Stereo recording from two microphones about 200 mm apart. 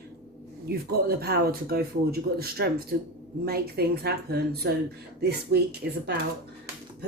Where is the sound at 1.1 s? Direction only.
50° right (ahead or behind).